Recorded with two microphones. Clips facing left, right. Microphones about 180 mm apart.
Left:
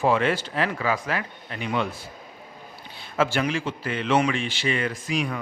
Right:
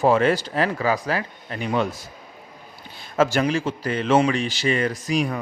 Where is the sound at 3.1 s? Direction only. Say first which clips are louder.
Right 4 dB; 40° right (ahead or behind).